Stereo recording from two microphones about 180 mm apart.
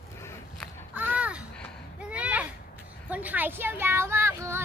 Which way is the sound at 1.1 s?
5° right (ahead or behind).